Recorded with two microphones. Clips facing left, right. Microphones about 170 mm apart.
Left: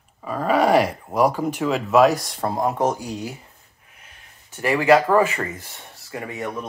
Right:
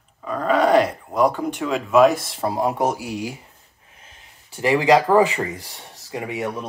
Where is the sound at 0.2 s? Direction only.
10° left (ahead or behind); by 3.3 s 10° right (ahead or behind).